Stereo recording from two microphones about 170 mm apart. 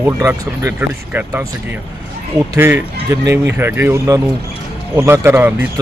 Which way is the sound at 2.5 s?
15° right (ahead or behind).